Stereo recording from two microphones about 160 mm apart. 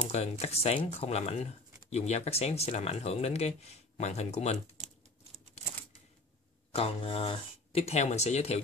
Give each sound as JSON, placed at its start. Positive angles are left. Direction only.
{"t": 0.0, "sound": "speech", "side_deg": 40}
{"t": 6.7, "sound": "speech", "side_deg": 40}